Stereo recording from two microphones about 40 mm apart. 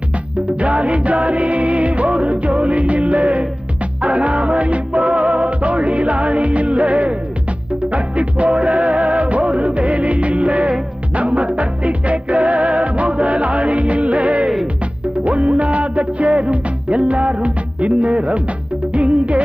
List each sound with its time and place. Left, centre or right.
0.6 s music: right